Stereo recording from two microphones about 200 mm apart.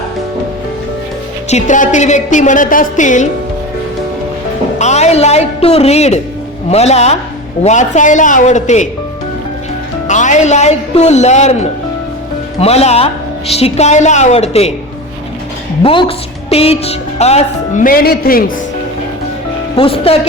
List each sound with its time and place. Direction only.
1.5 s a woman's voice: 35° left (ahead or behind)
4.8 s a woman's voice: 35° left (ahead or behind)
10.1 s a woman's voice: 35° left (ahead or behind)
15.8 s a woman's voice: 25° left (ahead or behind); by 18.5 s 45° left (ahead or behind)
19.7 s speech: 25° left (ahead or behind)